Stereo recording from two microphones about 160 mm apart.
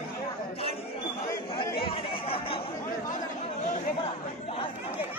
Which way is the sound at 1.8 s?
35° left (ahead or behind).